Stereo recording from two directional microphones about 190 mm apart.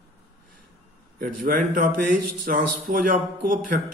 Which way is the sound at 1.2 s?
45° right (ahead or behind).